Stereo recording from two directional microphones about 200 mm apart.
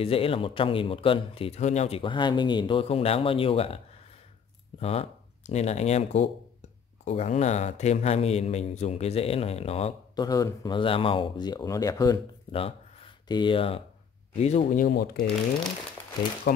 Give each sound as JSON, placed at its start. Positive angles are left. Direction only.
{"t": 0.0, "sound": "a man's voice", "side_deg": 30}
{"t": 10.2, "sound": "speech", "side_deg": 20}
{"t": 14.4, "sound": "speech", "side_deg": 35}
{"t": 16.5, "sound": "speech", "side_deg": 50}